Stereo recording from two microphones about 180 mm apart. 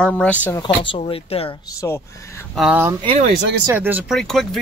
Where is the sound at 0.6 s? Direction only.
30° left (ahead or behind).